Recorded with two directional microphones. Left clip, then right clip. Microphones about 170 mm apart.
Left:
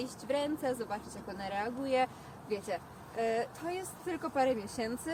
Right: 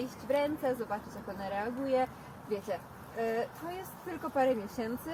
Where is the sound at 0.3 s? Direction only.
35° left (ahead or behind).